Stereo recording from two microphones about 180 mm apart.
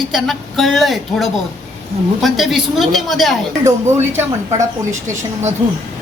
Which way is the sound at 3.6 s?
15° right (ahead or behind).